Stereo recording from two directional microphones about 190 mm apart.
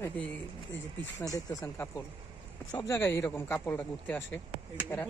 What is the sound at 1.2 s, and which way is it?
A man's voice, 15° left (ahead or behind).